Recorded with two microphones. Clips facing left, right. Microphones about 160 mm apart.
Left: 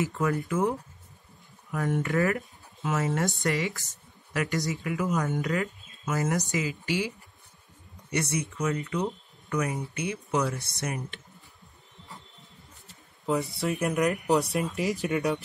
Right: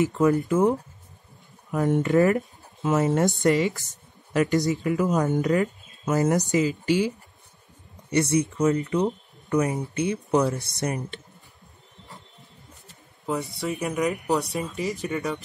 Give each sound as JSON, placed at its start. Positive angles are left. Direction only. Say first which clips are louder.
{"t": 0.0, "sound": "speech", "louder": "right 7 dB", "side_deg": -20}
{"t": 1.7, "sound": "speech", "louder": "right 6 dB", "side_deg": -20}
{"t": 3.4, "sound": "speech", "louder": "right 7 dB", "side_deg": -20}
{"t": 4.3, "sound": "speech", "louder": "right 7 dB", "side_deg": -30}
{"t": 5.5, "sound": "a sound", "louder": "right 7 dB", "side_deg": -35}
{"t": 6.1, "sound": "speech", "louder": "right 7 dB", "side_deg": -30}
{"t": 13.2, "sound": "speech", "louder": "left 1 dB", "side_deg": 0}